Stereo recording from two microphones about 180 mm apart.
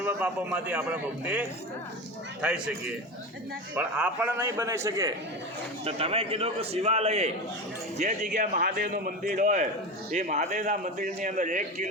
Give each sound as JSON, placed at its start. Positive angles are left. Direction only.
{"t": 0.0, "sound": "a man's voice", "side_deg": -10}
{"t": 3.8, "sound": "a man's voice", "side_deg": -10}
{"t": 5.8, "sound": "a man's voice", "side_deg": -35}